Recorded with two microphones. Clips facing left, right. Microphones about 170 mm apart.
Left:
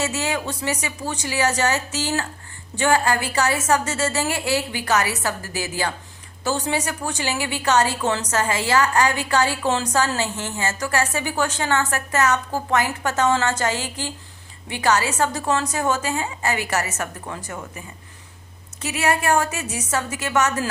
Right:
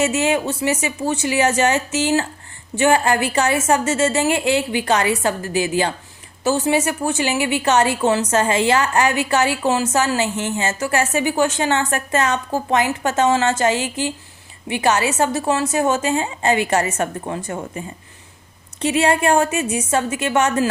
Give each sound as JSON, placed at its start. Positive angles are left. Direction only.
{"t": 0.0, "sound": "a woman's voice", "side_deg": -25}
{"t": 8.3, "sound": "a woman's voice", "side_deg": -25}
{"t": 14.8, "sound": "a woman's voice", "side_deg": -25}